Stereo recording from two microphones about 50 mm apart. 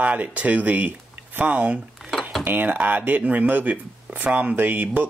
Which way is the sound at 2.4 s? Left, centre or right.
Right.